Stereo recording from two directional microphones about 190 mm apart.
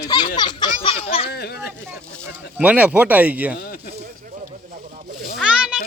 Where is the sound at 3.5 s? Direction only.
50° left (ahead or behind).